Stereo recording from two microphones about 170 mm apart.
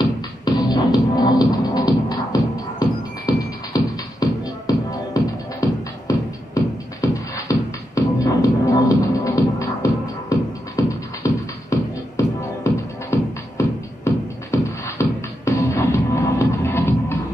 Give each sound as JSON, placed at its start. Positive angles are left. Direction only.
{"t": 0.0, "sound": "music", "side_deg": 25}